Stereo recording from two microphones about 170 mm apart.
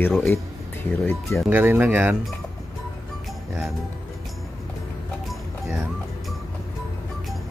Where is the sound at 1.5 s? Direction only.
10° right (ahead or behind).